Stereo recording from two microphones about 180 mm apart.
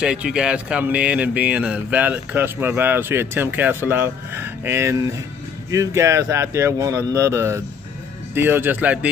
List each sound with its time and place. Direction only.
0.0 s speech: 5° right (ahead or behind)